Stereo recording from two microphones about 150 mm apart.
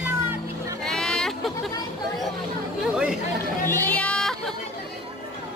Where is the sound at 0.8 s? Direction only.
5° left (ahead or behind).